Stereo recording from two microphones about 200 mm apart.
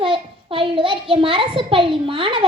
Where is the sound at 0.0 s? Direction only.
25° right (ahead or behind).